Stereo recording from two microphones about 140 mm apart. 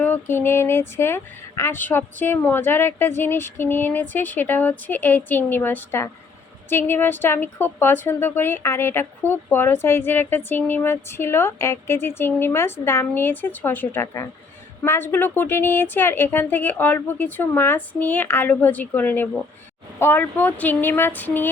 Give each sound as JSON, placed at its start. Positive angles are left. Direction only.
{"t": 0.0, "sound": "a woman's voice", "side_deg": 15}